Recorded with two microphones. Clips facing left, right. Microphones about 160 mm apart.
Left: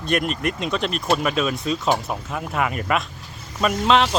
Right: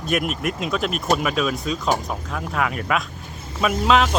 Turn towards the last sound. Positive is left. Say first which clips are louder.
# even
turn(degrees=-5)  # may be behind; listen again after turning